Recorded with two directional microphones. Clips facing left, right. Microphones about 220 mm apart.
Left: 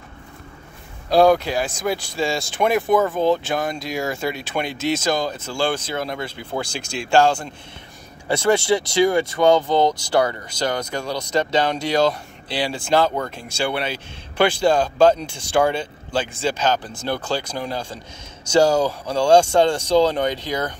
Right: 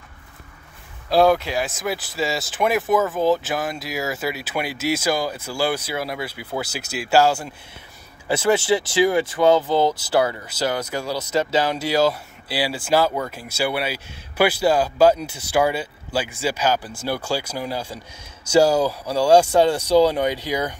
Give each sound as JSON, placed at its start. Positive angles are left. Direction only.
{"t": 1.1, "sound": "speech", "side_deg": 0}